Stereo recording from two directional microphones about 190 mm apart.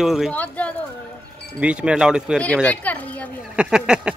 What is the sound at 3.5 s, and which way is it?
Speech, 5° right (ahead or behind).